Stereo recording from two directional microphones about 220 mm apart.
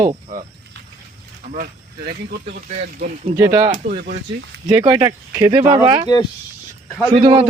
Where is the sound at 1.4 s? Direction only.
40° right (ahead or behind).